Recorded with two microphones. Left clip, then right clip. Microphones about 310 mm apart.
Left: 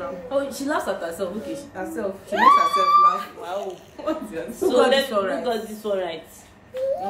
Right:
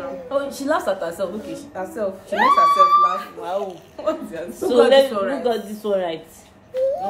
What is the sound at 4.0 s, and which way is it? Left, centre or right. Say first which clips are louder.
Speech: right 4 dB; centre.